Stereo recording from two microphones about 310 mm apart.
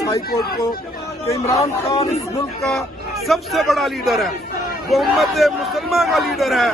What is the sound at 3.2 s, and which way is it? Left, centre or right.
Speech, centre.